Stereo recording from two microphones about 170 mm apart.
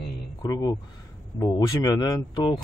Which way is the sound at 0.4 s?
25° left (ahead or behind).